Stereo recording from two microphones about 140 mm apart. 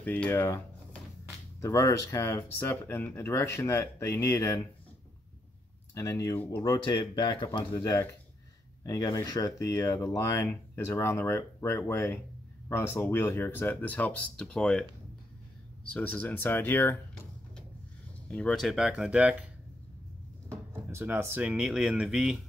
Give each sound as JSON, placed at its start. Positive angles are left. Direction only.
{"t": 0.0, "sound": "speech", "side_deg": 10}
{"t": 5.9, "sound": "speech", "side_deg": 20}
{"t": 6.6, "sound": "speech", "side_deg": 30}
{"t": 7.7, "sound": "speech", "side_deg": 20}
{"t": 15.9, "sound": "speech", "side_deg": 10}
{"t": 18.3, "sound": "speech", "side_deg": 5}
{"t": 20.4, "sound": "speech", "side_deg": -15}